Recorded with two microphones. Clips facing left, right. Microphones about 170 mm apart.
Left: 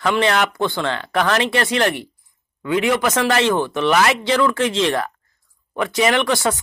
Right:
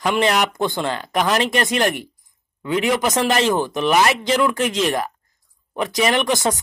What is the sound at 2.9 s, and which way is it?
Speech, 20° right (ahead or behind).